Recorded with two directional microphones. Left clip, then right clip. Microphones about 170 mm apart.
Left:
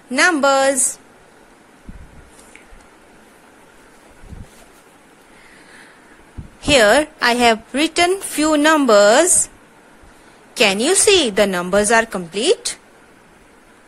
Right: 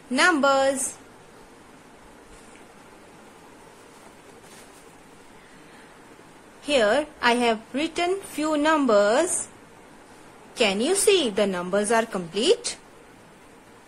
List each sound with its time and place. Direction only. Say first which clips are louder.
0.1 s a woman's voice: left 5 dB; 15° left (ahead or behind)
6.6 s a woman's voice: left 9 dB; 25° left (ahead or behind)
10.5 s a woman's voice: left 7 dB; 20° left (ahead or behind)